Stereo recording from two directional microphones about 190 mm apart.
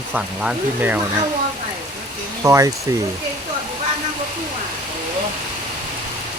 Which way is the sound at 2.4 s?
15° right (ahead or behind).